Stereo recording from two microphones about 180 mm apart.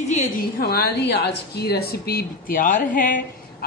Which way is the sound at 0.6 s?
60° left (ahead or behind).